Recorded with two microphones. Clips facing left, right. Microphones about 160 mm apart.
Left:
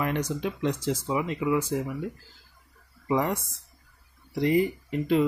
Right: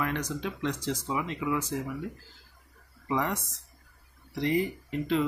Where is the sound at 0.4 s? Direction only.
10° left (ahead or behind).